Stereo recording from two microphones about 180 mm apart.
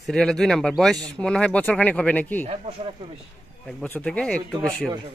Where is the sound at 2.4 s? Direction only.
35° right (ahead or behind).